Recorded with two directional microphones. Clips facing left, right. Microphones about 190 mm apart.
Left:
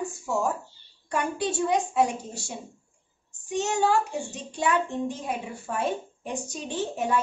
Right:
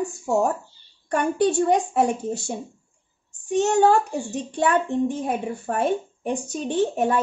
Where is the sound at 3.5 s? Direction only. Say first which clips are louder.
Right 6 dB; 60° right (ahead or behind).